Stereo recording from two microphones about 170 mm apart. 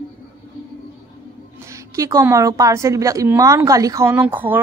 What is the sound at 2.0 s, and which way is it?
Speech, 15° right (ahead or behind).